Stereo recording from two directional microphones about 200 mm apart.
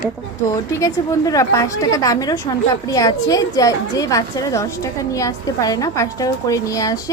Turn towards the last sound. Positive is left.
turn(degrees=15)  # may be behind; listen again after turning